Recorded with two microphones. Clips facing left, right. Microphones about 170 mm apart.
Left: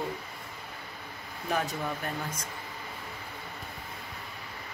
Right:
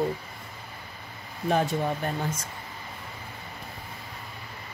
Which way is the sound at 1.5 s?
30° right (ahead or behind).